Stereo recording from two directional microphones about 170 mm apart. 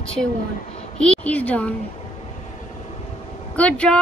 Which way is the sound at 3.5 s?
5° left (ahead or behind).